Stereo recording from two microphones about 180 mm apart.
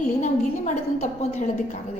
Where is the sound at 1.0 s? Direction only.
35° left (ahead or behind).